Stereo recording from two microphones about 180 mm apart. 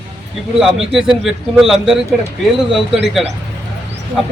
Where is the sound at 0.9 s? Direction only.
Centre (ahead or behind).